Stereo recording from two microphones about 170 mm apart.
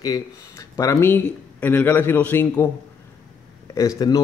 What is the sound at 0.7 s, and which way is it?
Speech, 20° left (ahead or behind).